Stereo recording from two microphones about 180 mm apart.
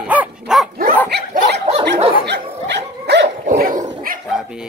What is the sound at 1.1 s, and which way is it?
Dog, 70° right (ahead or behind).